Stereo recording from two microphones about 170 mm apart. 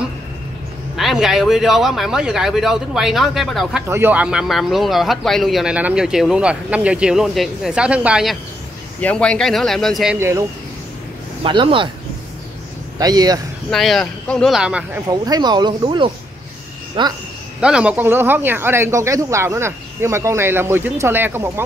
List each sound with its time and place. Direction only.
0.9 s speech: centre (ahead or behind)
9.0 s speech: 5° left (ahead or behind)
10.1 s speech: 15° right (ahead or behind)
11.4 s speech: 30° right (ahead or behind)
13.0 s speech: 25° right (ahead or behind)
13.7 s speech: centre (ahead or behind)
15.0 s speech: 20° right (ahead or behind)
17.6 s speech: 5° right (ahead or behind)